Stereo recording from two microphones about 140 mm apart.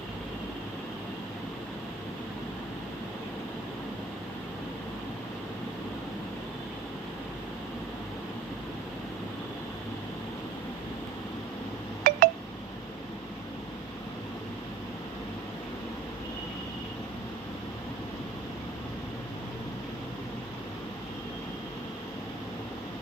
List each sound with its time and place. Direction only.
12.1 s telephone dialing: 90° right